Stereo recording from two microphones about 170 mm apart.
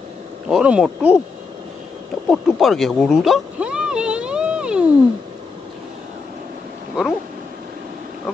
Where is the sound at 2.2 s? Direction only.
Centre (ahead or behind).